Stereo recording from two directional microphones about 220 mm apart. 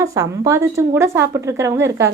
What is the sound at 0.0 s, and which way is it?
A woman's voice, 15° right (ahead or behind).